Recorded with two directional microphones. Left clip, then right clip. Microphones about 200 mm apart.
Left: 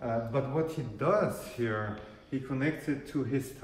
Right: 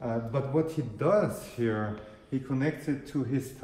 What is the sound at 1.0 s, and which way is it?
Speech, 45° right (ahead or behind).